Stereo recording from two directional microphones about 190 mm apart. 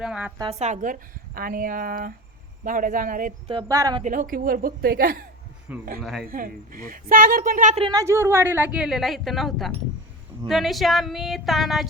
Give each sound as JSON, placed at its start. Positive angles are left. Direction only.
{"t": 0.0, "sound": "a woman's voice", "side_deg": -5}
{"t": 0.6, "sound": "a woman's voice", "side_deg": -40}
{"t": 3.5, "sound": "speech", "side_deg": -20}
{"t": 4.0, "sound": "a woman's voice", "side_deg": -45}
{"t": 6.0, "sound": "a woman's voice", "side_deg": 0}
{"t": 6.2, "sound": "a woman's voice", "side_deg": -50}
{"t": 7.8, "sound": "a woman's voice", "side_deg": -20}